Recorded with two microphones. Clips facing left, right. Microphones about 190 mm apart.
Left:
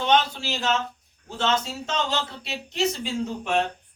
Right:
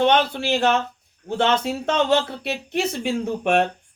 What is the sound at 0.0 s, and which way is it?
Speech, 60° right (ahead or behind).